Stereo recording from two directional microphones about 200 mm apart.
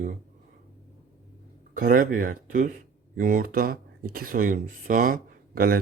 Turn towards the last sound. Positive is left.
turn(degrees=-45)  # may be behind; listen again after turning